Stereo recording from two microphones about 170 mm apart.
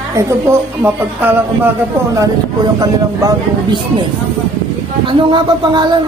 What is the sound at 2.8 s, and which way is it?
Speech, 25° right (ahead or behind).